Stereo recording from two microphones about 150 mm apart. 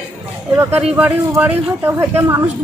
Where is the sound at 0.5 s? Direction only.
10° right (ahead or behind).